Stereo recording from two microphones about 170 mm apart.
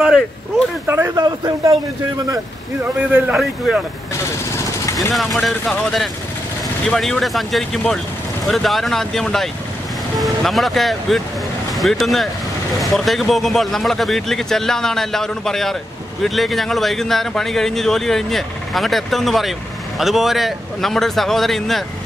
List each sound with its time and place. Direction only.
0.8 s speech: 15° right (ahead or behind)
3.0 s speech: 5° right (ahead or behind)
4.2 s vehicle: 15° left (ahead or behind)
5.1 s speech: centre (ahead or behind)